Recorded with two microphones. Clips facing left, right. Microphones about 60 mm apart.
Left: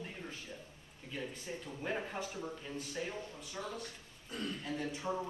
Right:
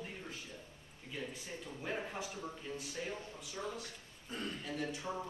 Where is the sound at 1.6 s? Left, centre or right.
Centre.